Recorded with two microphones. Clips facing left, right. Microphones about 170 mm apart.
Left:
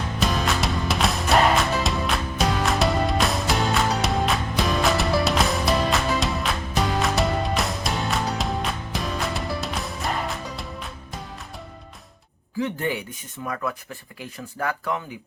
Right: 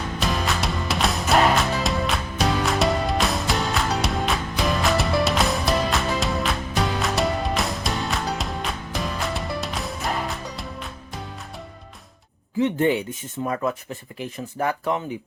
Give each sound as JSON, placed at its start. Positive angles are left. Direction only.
{"t": 0.2, "sound": "music", "side_deg": 0}
{"t": 12.5, "sound": "speech", "side_deg": -25}